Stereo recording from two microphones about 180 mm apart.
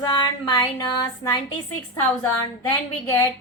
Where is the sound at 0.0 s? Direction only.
20° left (ahead or behind).